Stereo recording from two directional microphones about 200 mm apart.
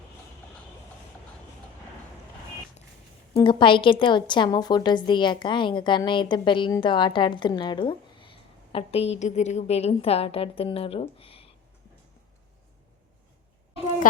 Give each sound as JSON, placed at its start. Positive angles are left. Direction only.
{"t": 3.3, "sound": "a woman's voice", "side_deg": 25}